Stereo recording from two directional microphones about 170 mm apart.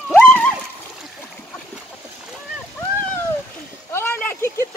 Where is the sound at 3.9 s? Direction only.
10° left (ahead or behind).